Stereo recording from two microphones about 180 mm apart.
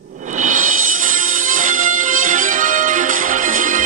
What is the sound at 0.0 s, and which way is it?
Music, 45° right (ahead or behind).